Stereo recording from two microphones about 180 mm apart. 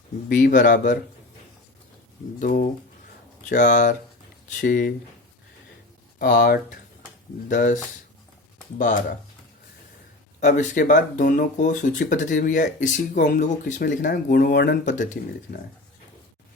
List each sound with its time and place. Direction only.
0.3 s speech: 45° left (ahead or behind)
2.4 s speech: 50° left (ahead or behind)
6.1 s speech: 60° left (ahead or behind)
7.5 s speech: 50° left (ahead or behind)
10.4 s speech: 45° left (ahead or behind)